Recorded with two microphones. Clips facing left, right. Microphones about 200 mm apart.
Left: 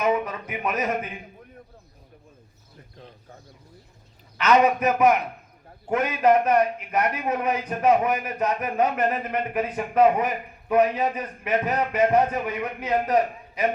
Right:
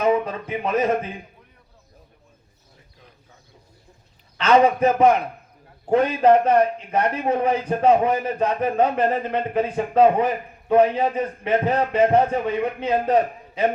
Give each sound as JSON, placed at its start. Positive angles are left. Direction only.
{"t": 0.0, "sound": "speech", "side_deg": -30}
{"t": 4.4, "sound": "a man's voice", "side_deg": -30}